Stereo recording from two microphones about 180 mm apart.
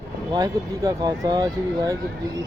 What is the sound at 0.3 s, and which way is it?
Speech, 20° right (ahead or behind).